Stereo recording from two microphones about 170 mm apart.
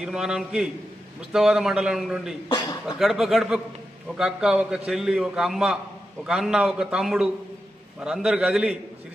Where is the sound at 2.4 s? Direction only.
20° left (ahead or behind).